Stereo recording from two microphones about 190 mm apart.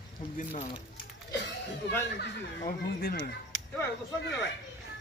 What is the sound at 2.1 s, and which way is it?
Speech, 60° left (ahead or behind).